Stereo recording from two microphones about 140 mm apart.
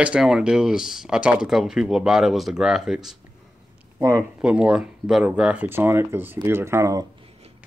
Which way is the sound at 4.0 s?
20° right (ahead or behind).